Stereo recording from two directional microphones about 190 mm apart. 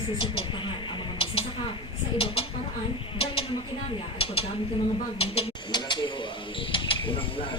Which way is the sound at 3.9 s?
30° left (ahead or behind).